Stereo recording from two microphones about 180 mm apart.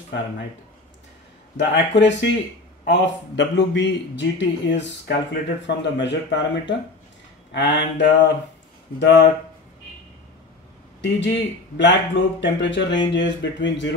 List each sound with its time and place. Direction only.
1.6 s speech: 75° left (ahead or behind)
9.0 s speech: 70° left (ahead or behind)
11.0 s speech: 80° left